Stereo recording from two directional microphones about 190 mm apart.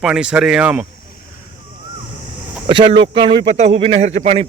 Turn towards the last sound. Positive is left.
turn(degrees=-35)  # may be behind; listen again after turning